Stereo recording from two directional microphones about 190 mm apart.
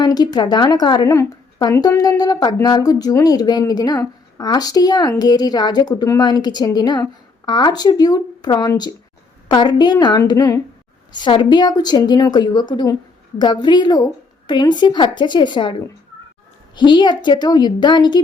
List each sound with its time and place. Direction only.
0.0 s a woman's voice: 20° left (ahead or behind)
16.7 s a woman's voice: 25° left (ahead or behind)